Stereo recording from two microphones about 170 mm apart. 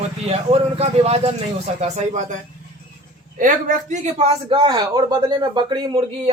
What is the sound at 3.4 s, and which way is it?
A man's voice, 50° right (ahead or behind).